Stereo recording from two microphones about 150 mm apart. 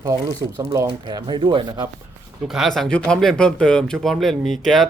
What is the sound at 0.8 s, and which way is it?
Speech, 35° right (ahead or behind).